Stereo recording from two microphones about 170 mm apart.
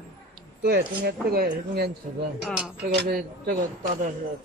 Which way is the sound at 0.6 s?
70° right (ahead or behind).